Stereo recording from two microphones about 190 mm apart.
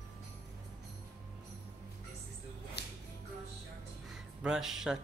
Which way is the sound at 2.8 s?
60° left (ahead or behind).